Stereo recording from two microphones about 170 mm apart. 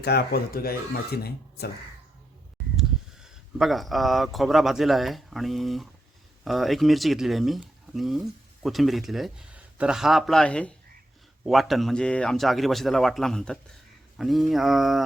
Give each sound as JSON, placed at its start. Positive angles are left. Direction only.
{"t": 0.0, "sound": "speech", "side_deg": 70}
{"t": 2.7, "sound": "speech", "side_deg": 0}